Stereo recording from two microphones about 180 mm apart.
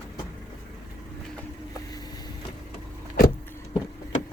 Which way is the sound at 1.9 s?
20° left (ahead or behind).